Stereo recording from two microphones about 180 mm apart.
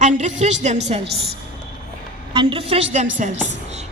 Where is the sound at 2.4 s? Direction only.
30° right (ahead or behind).